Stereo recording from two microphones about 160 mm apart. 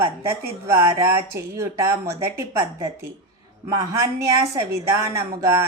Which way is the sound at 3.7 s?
20° right (ahead or behind).